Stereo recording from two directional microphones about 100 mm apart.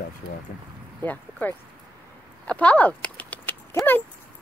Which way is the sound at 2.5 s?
15° left (ahead or behind).